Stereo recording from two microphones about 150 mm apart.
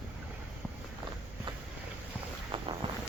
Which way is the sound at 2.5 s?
35° right (ahead or behind).